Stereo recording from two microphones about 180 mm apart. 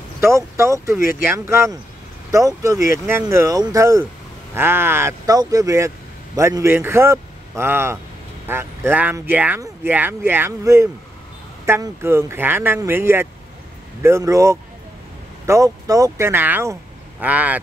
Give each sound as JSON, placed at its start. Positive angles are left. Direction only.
{"t": 0.2, "sound": "speech", "side_deg": -15}